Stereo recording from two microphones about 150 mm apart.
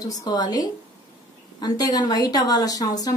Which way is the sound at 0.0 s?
25° left (ahead or behind).